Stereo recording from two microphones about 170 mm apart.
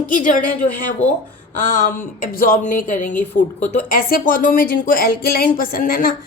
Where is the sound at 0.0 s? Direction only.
50° left (ahead or behind).